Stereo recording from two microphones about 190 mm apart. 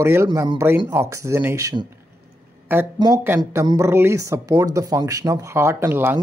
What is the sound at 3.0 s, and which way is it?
Speech, 15° right (ahead or behind).